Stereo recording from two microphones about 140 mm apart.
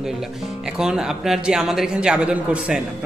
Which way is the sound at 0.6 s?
5° right (ahead or behind).